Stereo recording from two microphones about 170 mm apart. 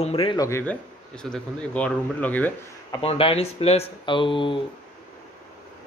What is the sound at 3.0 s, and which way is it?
Speech, 35° left (ahead or behind).